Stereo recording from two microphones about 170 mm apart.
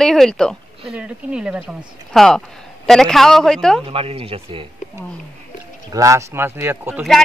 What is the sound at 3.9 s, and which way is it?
Speech, 35° right (ahead or behind).